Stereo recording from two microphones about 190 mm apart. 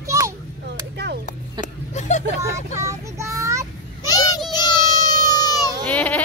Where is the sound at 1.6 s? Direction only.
40° left (ahead or behind).